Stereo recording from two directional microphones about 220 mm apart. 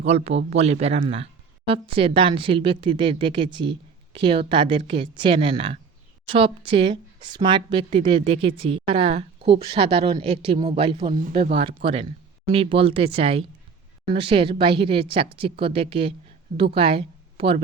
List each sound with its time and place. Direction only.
0.0 s a woman's voice: 30° right (ahead or behind)